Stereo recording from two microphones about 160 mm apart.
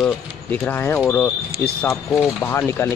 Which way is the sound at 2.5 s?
15° left (ahead or behind).